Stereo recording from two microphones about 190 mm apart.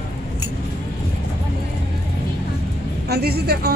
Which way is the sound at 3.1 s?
55° right (ahead or behind).